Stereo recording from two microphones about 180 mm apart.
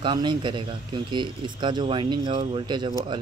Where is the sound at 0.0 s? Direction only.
25° right (ahead or behind).